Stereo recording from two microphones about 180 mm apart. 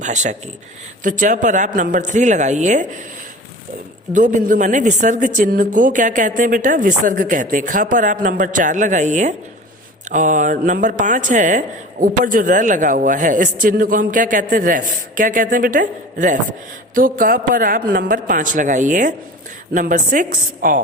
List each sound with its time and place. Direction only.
0.0 s speech: 40° right (ahead or behind)
4.1 s speech: 45° right (ahead or behind)